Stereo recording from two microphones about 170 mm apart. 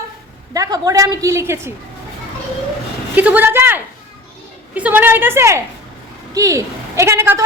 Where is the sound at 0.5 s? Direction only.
20° right (ahead or behind).